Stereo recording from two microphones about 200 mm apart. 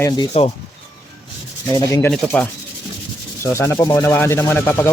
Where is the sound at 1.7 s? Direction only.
15° left (ahead or behind).